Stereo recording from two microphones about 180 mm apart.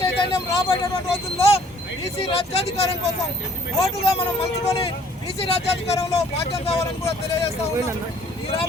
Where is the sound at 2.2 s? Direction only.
30° left (ahead or behind).